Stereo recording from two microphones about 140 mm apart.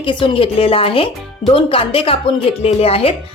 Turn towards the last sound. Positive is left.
turn(degrees=45)  # may be behind; listen again after turning